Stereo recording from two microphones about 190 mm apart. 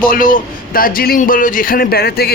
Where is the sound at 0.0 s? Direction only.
45° left (ahead or behind).